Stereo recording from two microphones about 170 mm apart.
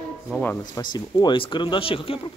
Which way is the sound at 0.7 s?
25° left (ahead or behind).